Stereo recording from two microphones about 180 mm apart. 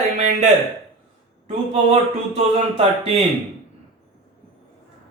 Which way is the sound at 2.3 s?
35° right (ahead or behind).